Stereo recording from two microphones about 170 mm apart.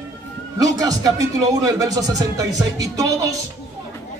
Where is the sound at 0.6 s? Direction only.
20° right (ahead or behind).